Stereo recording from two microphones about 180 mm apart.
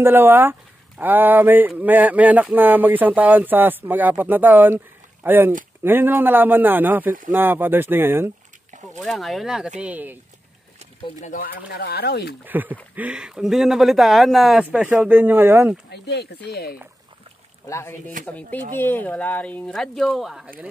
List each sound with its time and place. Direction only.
0.0 s speech: 10° right (ahead or behind)
9.0 s speech: centre (ahead or behind)
11.1 s speech: 45° left (ahead or behind); by 12.4 s 65° left (ahead or behind)
12.4 s speech: 10° right (ahead or behind)
15.9 s speech: 65° left (ahead or behind)
17.6 s speech: 15° left (ahead or behind); by 20.5 s centre (ahead or behind)